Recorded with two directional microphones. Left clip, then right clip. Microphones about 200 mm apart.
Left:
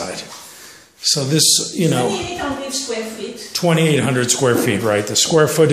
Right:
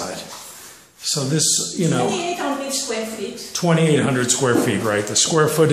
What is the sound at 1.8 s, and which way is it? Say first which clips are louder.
Speech: left 4 dB; 20° left (ahead or behind).